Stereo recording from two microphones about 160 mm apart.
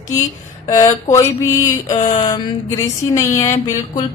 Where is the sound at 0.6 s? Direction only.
20° left (ahead or behind).